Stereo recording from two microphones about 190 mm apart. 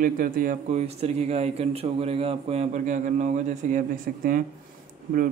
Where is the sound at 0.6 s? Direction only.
35° right (ahead or behind).